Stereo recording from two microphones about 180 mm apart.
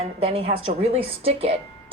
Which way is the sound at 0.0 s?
35° right (ahead or behind).